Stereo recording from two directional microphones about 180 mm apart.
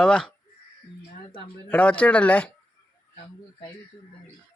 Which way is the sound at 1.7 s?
5° left (ahead or behind).